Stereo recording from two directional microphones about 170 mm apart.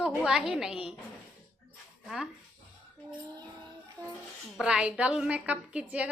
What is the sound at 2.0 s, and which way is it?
Speech, centre (ahead or behind).